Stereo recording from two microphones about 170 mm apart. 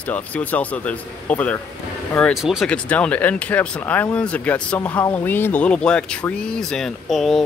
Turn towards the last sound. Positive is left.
turn(degrees=0)  # may be behind; listen again after turning